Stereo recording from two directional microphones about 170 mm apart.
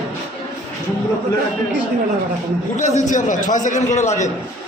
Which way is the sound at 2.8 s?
45° left (ahead or behind).